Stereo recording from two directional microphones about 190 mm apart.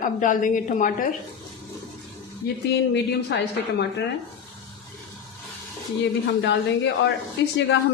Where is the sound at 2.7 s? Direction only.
60° left (ahead or behind).